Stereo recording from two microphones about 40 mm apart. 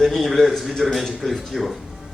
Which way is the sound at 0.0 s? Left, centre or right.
Centre.